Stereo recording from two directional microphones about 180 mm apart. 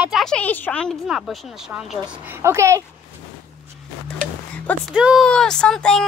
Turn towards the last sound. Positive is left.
turn(degrees=5)  # may be behind; listen again after turning